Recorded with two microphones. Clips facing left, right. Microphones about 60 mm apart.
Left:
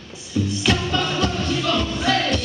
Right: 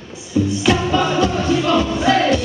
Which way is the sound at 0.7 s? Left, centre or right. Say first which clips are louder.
Right 5 dB; centre.